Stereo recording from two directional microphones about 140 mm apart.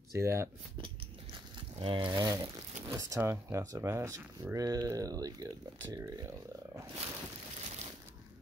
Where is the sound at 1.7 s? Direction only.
35° right (ahead or behind).